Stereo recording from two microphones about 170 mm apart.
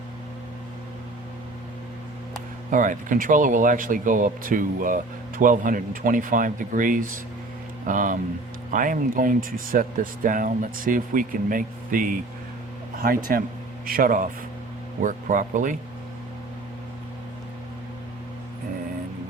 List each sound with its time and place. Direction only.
2.6 s speech: 50° right (ahead or behind)